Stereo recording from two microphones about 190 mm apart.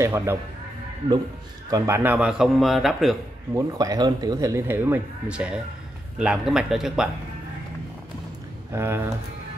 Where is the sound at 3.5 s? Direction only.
15° right (ahead or behind).